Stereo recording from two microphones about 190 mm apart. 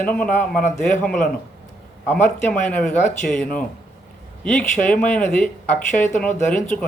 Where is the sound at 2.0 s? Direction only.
10° left (ahead or behind).